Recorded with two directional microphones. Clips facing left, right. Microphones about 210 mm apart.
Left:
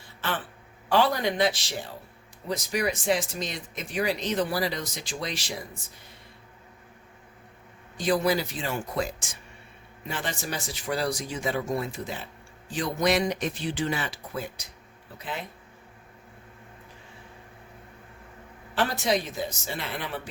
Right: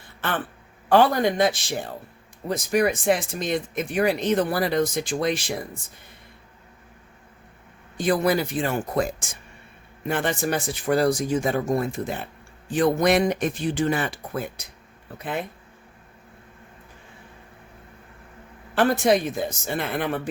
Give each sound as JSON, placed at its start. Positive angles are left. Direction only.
{"t": 0.2, "sound": "speech", "side_deg": -55}
{"t": 7.9, "sound": "speech", "side_deg": -55}
{"t": 18.7, "sound": "speech", "side_deg": -55}